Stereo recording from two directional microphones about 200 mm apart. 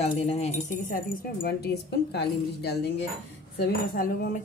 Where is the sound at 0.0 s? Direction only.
30° left (ahead or behind).